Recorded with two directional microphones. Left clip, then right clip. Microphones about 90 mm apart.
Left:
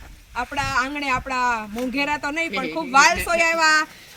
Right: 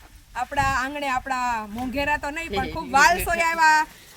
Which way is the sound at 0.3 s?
50° right (ahead or behind).